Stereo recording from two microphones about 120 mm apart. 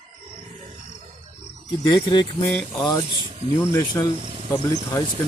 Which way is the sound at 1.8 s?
35° left (ahead or behind).